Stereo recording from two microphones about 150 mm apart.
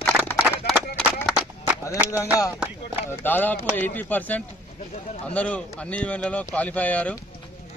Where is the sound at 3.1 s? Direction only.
10° left (ahead or behind).